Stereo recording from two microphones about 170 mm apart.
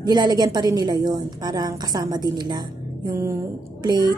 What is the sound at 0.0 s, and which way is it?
A woman's voice, 25° right (ahead or behind).